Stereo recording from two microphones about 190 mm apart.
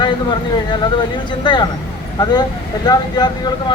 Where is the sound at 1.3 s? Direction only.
25° left (ahead or behind).